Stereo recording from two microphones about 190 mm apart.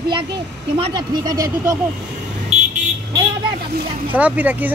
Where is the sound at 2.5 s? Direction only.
35° right (ahead or behind).